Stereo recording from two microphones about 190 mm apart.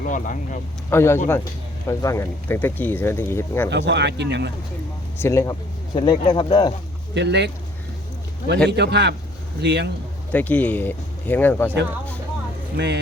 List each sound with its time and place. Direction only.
0.1 s speech: 40° left (ahead or behind)
0.9 s speech: 15° left (ahead or behind)
3.7 s speech: 65° right (ahead or behind)
5.1 s speech: 15° left (ahead or behind)
7.1 s speech: 65° right (ahead or behind)
8.7 s speech: 60° right (ahead or behind)
10.3 s speech: 10° left (ahead or behind)
12.7 s speech: 60° right (ahead or behind)